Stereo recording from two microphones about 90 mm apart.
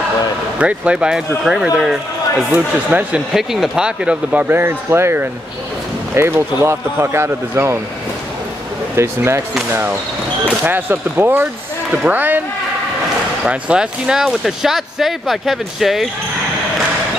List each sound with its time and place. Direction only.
0.6 s speech: 15° right (ahead or behind)
2.5 s speech: 20° right (ahead or behind)
3.3 s speech: 5° right (ahead or behind); by 7.8 s 30° right (ahead or behind)
8.9 s speech: 30° right (ahead or behind)
13.5 s speech: 10° right (ahead or behind)